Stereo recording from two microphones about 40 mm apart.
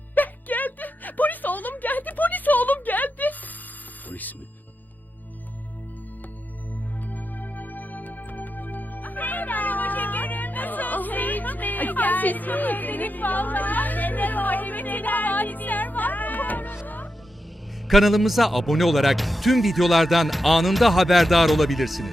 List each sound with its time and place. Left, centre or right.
0.1 s music: left
7.1 s music: left
17.8 s a man's voice: centre